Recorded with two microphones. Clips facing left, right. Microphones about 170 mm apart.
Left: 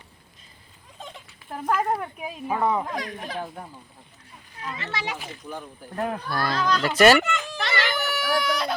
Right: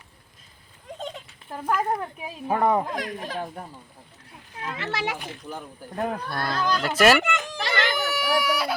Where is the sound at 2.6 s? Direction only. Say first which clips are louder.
Right 2 dB; 50° right (ahead or behind).